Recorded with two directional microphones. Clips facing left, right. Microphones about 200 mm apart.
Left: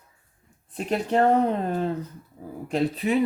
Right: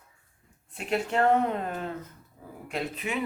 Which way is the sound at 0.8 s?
35° left (ahead or behind).